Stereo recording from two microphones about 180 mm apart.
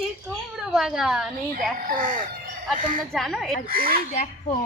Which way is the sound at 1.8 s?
45° right (ahead or behind).